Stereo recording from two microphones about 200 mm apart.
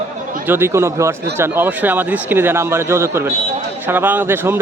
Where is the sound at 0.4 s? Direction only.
10° right (ahead or behind).